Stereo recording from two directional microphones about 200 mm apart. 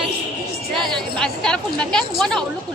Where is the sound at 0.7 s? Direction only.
5° left (ahead or behind).